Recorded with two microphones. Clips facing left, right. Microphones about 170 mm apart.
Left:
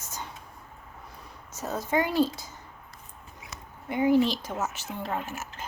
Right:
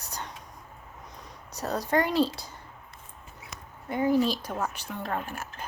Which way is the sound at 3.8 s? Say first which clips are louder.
Left 2 dB; 20° left (ahead or behind).